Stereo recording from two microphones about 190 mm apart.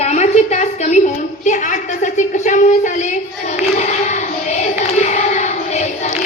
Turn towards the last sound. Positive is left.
turn(degrees=35)  # may be behind; listen again after turning